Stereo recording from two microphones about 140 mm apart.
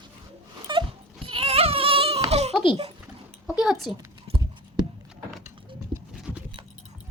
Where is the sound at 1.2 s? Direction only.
45° right (ahead or behind).